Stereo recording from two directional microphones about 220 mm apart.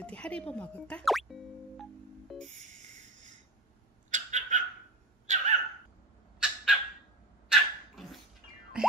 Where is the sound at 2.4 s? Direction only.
35° right (ahead or behind).